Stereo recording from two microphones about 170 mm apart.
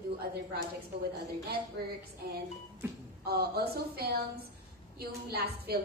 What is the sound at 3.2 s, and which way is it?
A woman's voice, 65° right (ahead or behind).